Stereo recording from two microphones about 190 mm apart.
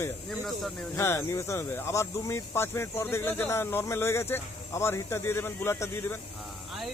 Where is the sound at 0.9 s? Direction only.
15° left (ahead or behind).